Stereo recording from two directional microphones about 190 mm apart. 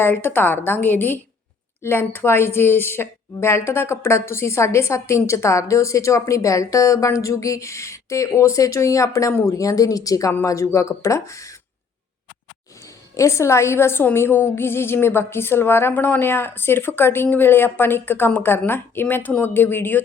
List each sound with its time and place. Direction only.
0.0 s a woman's voice: 10° left (ahead or behind)
13.1 s a woman's voice: 15° left (ahead or behind)